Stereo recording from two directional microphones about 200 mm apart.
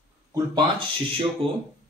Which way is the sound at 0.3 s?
25° right (ahead or behind).